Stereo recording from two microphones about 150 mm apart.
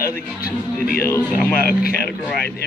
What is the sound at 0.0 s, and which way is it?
Speech, 85° left.